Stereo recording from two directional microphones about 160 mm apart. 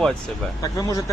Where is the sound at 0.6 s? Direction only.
20° left (ahead or behind).